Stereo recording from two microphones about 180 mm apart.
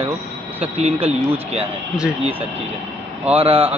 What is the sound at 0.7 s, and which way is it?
Speech, 35° right (ahead or behind).